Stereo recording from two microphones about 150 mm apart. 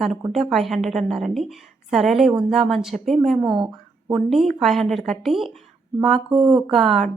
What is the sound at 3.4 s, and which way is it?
Speech, 30° right (ahead or behind).